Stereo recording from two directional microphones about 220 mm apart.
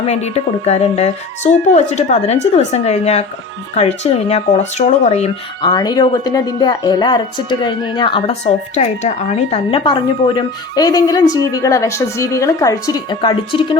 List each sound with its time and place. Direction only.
0.0 s speech: 30° left (ahead or behind)